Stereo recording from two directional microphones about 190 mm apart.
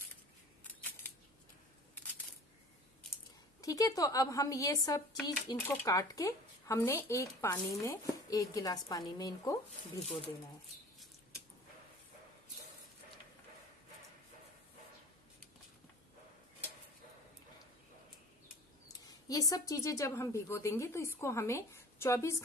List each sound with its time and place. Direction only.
0.7 s camera: 10° left (ahead or behind)
3.6 s speech: 20° left (ahead or behind)
10.2 s speech: centre (ahead or behind)
18.9 s speech: 20° left (ahead or behind)